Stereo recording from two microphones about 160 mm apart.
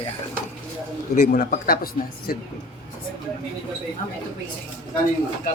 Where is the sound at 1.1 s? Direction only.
60° left (ahead or behind).